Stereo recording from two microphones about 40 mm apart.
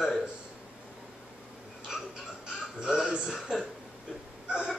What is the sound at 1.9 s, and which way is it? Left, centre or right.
A man's voice, centre.